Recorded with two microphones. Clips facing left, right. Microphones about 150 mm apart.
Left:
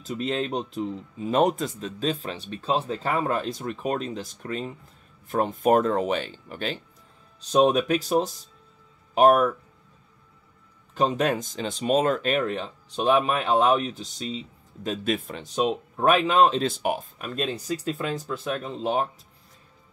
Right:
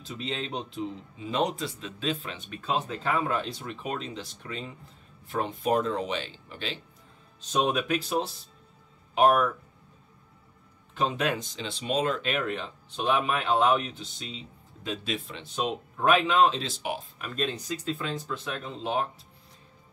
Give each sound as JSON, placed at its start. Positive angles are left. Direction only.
{"t": 0.0, "sound": "speech", "side_deg": 45}
{"t": 11.0, "sound": "speech", "side_deg": 40}
{"t": 17.4, "sound": "speech", "side_deg": 10}
{"t": 18.2, "sound": "speech", "side_deg": 40}